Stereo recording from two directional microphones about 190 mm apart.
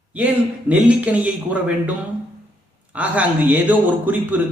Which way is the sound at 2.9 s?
5° right (ahead or behind).